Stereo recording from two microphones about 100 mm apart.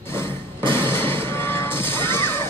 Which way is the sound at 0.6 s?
55° right (ahead or behind).